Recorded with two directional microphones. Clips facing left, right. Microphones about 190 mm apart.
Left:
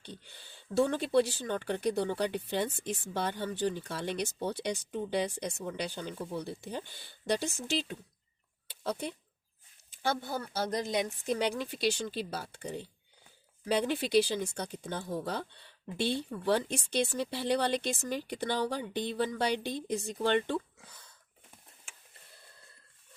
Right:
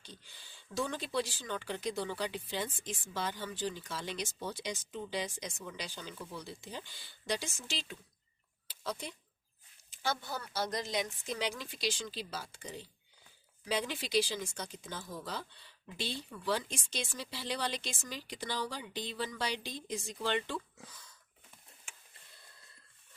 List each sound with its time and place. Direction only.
0.0 s speech: 60° left (ahead or behind)
8.6 s a sound: 60° left (ahead or behind)
10.0 s speech: 55° left (ahead or behind)